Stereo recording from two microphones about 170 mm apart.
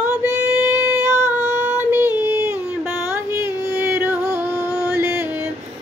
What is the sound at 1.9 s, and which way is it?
Female singing, 15° right (ahead or behind).